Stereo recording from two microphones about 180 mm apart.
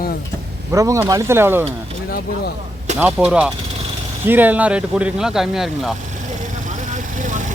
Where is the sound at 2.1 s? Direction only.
60° left (ahead or behind).